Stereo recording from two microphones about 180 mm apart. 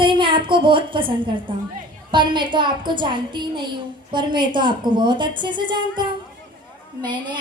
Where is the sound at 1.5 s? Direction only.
30° right (ahead or behind).